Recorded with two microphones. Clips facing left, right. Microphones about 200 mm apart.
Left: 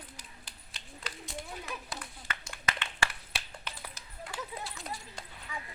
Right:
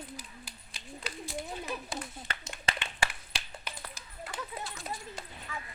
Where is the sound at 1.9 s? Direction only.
25° right (ahead or behind).